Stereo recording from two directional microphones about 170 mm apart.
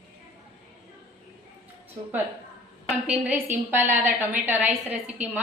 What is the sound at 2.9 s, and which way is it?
A woman's voice, 5° right (ahead or behind).